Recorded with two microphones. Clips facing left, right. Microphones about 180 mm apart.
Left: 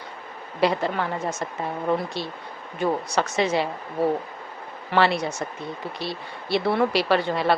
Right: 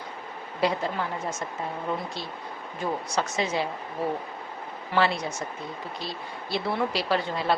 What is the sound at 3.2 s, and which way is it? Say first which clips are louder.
Speech: left 4 dB; 70° left (ahead or behind).